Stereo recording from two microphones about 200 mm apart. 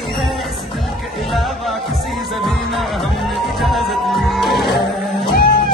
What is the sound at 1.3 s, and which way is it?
Music, centre (ahead or behind).